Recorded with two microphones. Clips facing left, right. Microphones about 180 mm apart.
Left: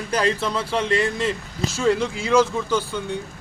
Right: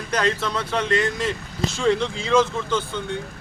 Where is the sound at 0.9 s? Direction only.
30° left (ahead or behind).